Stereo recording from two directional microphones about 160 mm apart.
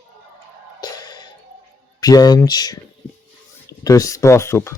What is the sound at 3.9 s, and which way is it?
Speech, 20° left (ahead or behind).